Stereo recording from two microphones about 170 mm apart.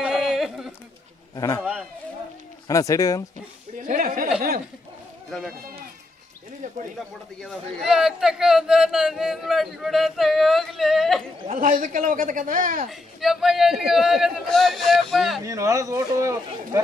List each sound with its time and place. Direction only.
0.0 s a sound: 5° right (ahead or behind)
1.3 s a man's voice: 20° left (ahead or behind)
1.6 s speech: 5° right (ahead or behind)
2.7 s speech: 20° left (ahead or behind)
3.8 s a sound: 55° right (ahead or behind)
7.3 s a man's voice: centre (ahead or behind)
11.5 s a man's voice: 50° right (ahead or behind)
12.9 s a man's voice: centre (ahead or behind)
15.4 s speech: 20° right (ahead or behind)